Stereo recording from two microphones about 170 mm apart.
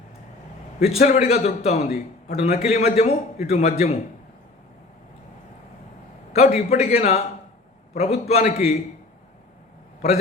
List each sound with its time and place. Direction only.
0.8 s a man's voice: 40° left (ahead or behind)
6.3 s a man's voice: 40° left (ahead or behind)